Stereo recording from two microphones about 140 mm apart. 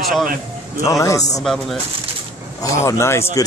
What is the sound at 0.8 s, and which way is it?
Speech, 20° left (ahead or behind).